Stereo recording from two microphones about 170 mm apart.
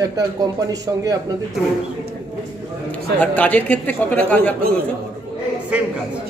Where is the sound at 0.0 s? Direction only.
20° right (ahead or behind).